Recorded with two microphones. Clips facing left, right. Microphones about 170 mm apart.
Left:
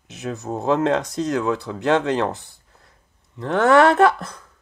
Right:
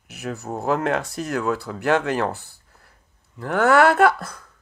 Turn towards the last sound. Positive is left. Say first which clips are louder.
# left 1 dB
turn(degrees=20)  # may be behind; listen again after turning